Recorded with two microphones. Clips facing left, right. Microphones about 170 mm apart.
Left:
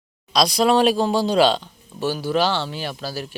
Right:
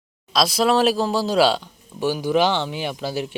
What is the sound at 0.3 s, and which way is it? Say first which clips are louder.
Speech: left 1 dB; centre (ahead or behind).